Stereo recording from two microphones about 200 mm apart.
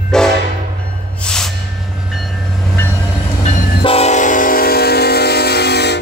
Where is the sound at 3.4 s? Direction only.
40° left (ahead or behind); by 6.0 s 55° left (ahead or behind).